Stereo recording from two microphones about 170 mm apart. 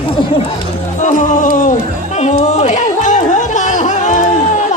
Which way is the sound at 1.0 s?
50° left (ahead or behind).